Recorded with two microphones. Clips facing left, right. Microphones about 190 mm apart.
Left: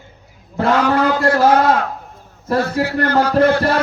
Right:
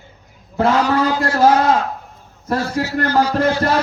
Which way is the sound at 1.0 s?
60° left (ahead or behind).